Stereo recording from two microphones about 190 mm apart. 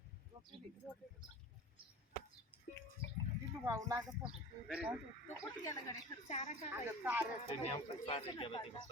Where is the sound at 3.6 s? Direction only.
15° right (ahead or behind).